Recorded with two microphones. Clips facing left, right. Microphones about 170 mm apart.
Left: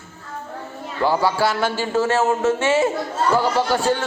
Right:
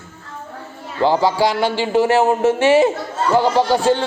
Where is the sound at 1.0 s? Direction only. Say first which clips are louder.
Right 3 dB; 20° right (ahead or behind).